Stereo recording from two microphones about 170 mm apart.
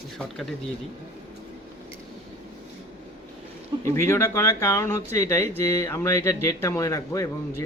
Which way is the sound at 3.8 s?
15° left (ahead or behind).